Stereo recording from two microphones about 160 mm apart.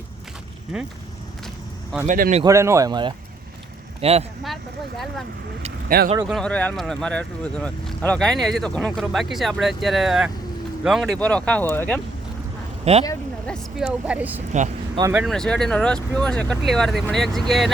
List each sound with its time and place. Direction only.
0.7 s speech: 5° right (ahead or behind)
2.0 s speech: 65° right (ahead or behind)
2.4 s speech: 20° right (ahead or behind)
4.0 s speech: 40° right (ahead or behind)
5.9 s speech: 70° right (ahead or behind)
6.2 s speech: 5° left (ahead or behind)
12.8 s speech: 40° right (ahead or behind)
13.5 s speech: centre (ahead or behind)
15.3 s speech: 5° left (ahead or behind)